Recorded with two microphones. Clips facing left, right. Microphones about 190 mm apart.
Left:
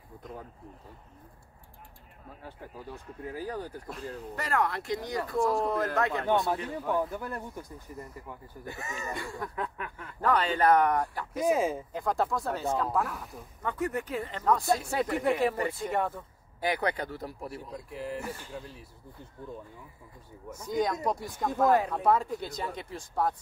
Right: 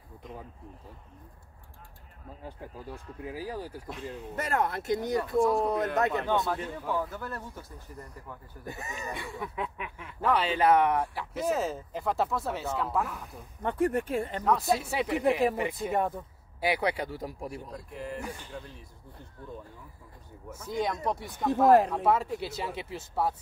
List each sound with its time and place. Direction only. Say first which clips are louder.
2.4 s speech: right 1 dB; 10° right (ahead or behind)
4.4 s speech: even; 20° right (ahead or behind)
5.4 s speech: even; centre (ahead or behind)
6.4 s speech: left 2 dB; 20° left (ahead or behind)
8.6 s speech: even; 20° right (ahead or behind)
9.1 s speech: left 1 dB; centre (ahead or behind)
11.3 s speech: left 3 dB; 10° left (ahead or behind)
11.9 s speech: even; 5° right (ahead or behind)
13.6 s speech: right 5 dB; 30° right (ahead or behind)
14.7 s speech: even; 5° right (ahead or behind)
17.6 s speech: left 1 dB; 5° left (ahead or behind)
20.4 s speech: left 2 dB; centre (ahead or behind)